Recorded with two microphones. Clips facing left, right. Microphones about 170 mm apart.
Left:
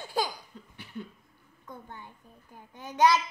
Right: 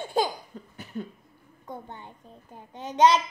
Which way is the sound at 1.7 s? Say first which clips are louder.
Right 5 dB; 25° right (ahead or behind).